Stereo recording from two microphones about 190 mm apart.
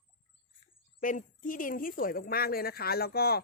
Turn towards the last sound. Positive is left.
turn(degrees=55)  # may be behind; listen again after turning